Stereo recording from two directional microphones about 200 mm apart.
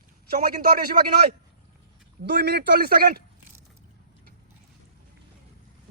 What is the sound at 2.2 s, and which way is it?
Speech, 55° right (ahead or behind).